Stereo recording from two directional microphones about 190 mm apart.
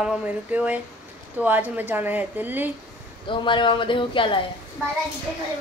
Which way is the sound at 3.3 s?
25° left (ahead or behind).